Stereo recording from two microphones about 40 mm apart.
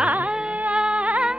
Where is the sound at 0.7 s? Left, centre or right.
Right.